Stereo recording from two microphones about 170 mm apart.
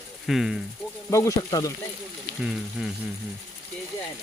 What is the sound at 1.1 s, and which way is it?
Speech, 20° left (ahead or behind).